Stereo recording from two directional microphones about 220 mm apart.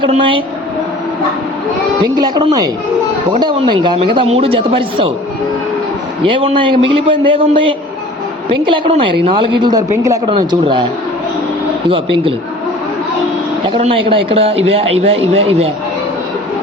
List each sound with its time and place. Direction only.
0.0 s a woman's voice: 20° right (ahead or behind)
2.1 s a woman's voice: 20° right (ahead or behind)
6.2 s a woman's voice: 25° right (ahead or behind)
11.9 s a woman's voice: 25° right (ahead or behind)
13.7 s a woman's voice: 25° right (ahead or behind)